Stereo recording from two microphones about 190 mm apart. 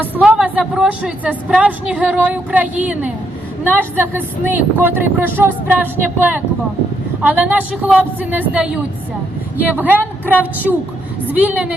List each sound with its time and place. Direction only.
0.2 s a woman's voice: 5° right (ahead or behind)
11.3 s a woman's voice: 10° right (ahead or behind)